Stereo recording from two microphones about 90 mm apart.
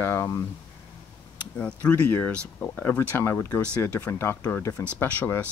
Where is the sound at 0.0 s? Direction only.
25° left (ahead or behind).